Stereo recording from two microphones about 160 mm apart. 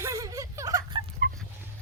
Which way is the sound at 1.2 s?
75° right (ahead or behind).